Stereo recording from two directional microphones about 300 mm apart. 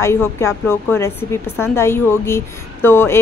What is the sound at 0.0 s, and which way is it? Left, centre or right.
Speech, centre.